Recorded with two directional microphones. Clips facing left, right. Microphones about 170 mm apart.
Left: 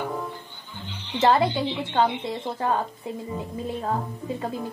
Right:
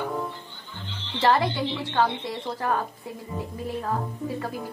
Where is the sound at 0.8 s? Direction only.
15° left (ahead or behind).